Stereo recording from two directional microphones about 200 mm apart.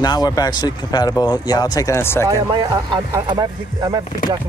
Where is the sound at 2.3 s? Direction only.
20° right (ahead or behind).